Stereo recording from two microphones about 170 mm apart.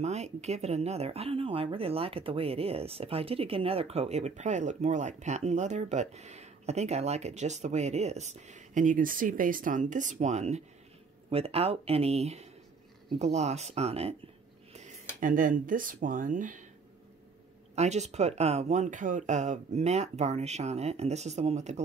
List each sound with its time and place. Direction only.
0.0 s speech: 40° right (ahead or behind)
15.1 s speech: 55° right (ahead or behind)
17.7 s speech: 40° right (ahead or behind)